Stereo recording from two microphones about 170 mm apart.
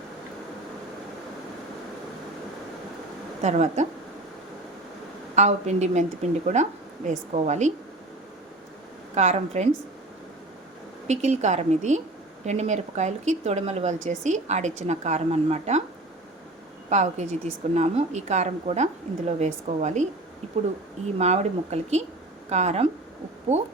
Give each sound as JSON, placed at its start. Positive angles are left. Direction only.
{"t": 3.4, "sound": "speech", "side_deg": -45}
{"t": 5.3, "sound": "speech", "side_deg": -40}
{"t": 9.1, "sound": "speech", "side_deg": -40}
{"t": 11.1, "sound": "speech", "side_deg": -40}
{"t": 16.9, "sound": "speech", "side_deg": -40}
{"t": 21.2, "sound": "speech", "side_deg": -40}